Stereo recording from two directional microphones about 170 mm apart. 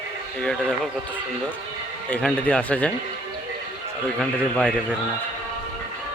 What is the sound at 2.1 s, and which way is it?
Speech, 10° left (ahead or behind).